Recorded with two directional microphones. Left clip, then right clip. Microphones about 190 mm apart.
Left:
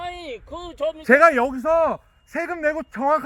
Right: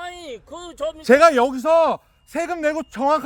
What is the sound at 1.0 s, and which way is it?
Speech, 20° left (ahead or behind).